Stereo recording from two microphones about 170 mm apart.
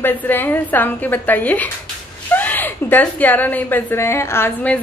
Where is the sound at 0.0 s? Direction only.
10° left (ahead or behind).